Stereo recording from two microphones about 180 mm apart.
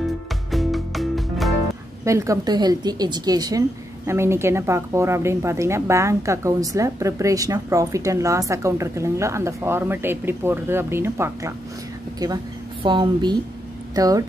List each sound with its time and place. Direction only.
0.0 s music: centre (ahead or behind)
2.0 s a woman's voice: 15° right (ahead or behind)
12.8 s speech: 25° right (ahead or behind)